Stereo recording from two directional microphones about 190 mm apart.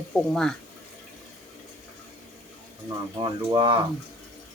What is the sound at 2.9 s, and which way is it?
Speech, 25° right (ahead or behind).